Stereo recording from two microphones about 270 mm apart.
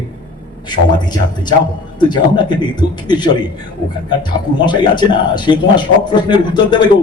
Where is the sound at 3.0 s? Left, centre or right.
Centre.